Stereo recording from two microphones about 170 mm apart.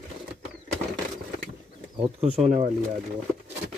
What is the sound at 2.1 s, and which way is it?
Speech, 35° right (ahead or behind).